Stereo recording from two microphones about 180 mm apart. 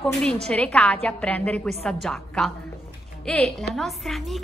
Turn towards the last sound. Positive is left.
turn(degrees=0)  # may be behind; listen again after turning